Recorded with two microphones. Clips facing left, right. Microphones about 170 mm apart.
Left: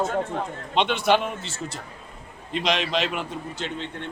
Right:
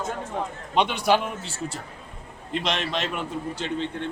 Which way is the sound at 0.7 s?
10° right (ahead or behind).